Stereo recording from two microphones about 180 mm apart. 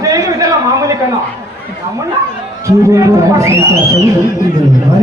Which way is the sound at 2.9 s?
15° right (ahead or behind).